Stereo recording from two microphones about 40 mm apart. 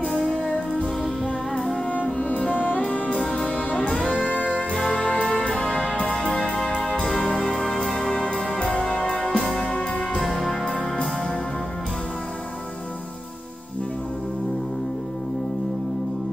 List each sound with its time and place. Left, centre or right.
2.1 s music: left
4.7 s music: centre
5.4 s music: left
7.1 s music: centre; by 9.5 s left
9.5 s music: centre